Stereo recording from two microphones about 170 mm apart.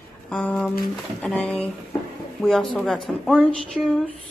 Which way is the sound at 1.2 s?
5° left (ahead or behind).